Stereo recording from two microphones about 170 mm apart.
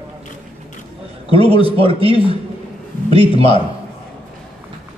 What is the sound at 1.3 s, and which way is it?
A man's voice, 35° right (ahead or behind).